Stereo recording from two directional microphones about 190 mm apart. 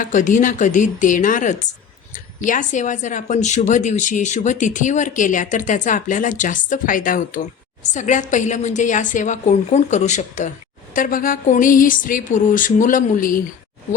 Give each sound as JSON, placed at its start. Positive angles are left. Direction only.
{"t": 0.0, "sound": "speech", "side_deg": 40}